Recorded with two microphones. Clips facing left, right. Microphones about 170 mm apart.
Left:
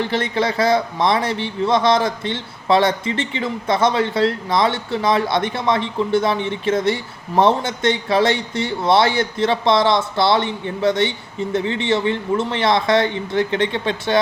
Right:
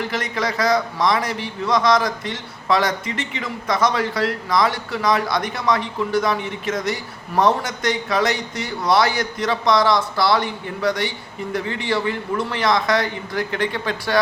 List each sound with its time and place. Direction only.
0.0 s a man's voice: 30° left (ahead or behind)